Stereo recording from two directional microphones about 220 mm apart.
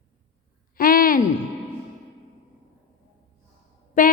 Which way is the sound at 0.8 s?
40° left (ahead or behind).